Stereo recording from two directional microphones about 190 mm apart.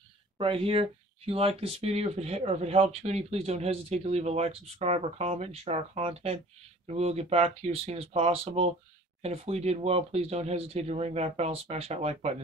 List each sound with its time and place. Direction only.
0.4 s speech: 30° right (ahead or behind)